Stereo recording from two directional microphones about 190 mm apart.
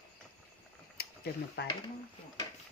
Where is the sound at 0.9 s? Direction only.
55° left (ahead or behind).